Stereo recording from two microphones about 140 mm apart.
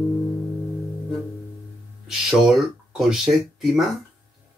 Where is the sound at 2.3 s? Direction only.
5° right (ahead or behind).